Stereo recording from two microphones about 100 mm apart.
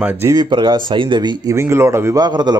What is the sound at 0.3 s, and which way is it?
Speech, 45° right (ahead or behind).